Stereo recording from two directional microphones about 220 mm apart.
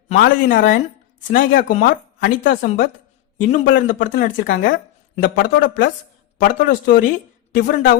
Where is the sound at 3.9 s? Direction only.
35° left (ahead or behind).